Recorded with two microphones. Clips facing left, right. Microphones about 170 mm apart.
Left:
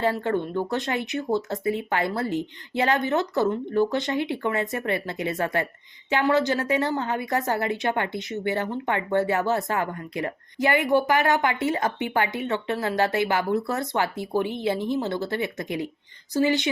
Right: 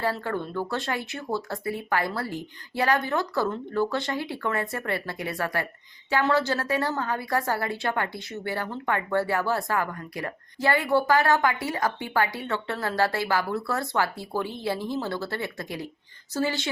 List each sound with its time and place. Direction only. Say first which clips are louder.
0.0 s speech: left 4 dB; 20° left (ahead or behind)